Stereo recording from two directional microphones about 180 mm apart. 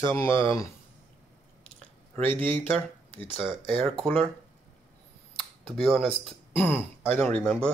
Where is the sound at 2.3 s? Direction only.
30° right (ahead or behind).